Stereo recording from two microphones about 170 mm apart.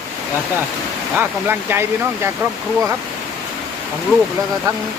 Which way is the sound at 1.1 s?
10° right (ahead or behind).